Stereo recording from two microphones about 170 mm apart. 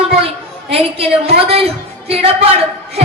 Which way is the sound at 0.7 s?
35° right (ahead or behind).